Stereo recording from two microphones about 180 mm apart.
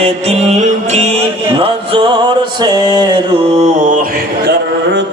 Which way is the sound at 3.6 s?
45° right (ahead or behind).